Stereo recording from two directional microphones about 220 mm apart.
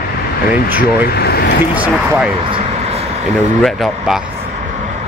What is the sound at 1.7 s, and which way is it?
Speech, 5° right (ahead or behind).